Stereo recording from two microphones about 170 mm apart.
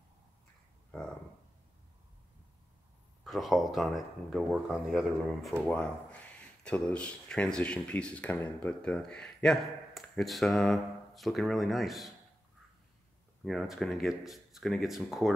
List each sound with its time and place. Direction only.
3.3 s speech: centre (ahead or behind)
13.4 s speech: centre (ahead or behind)